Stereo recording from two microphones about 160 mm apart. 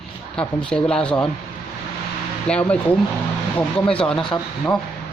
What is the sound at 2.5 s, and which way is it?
Speech, 5° left (ahead or behind).